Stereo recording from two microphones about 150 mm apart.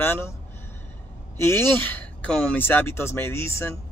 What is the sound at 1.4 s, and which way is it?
Speech, 15° left (ahead or behind).